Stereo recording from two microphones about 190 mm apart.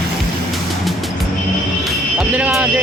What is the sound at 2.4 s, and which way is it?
Vehicle, 5° right (ahead or behind).